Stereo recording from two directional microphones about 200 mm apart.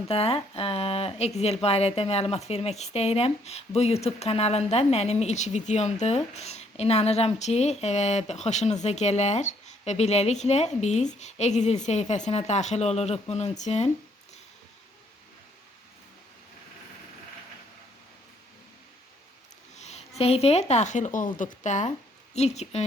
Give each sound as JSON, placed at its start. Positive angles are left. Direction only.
{"t": 0.1, "sound": "a woman's voice", "side_deg": 30}
{"t": 19.8, "sound": "a woman's voice", "side_deg": 35}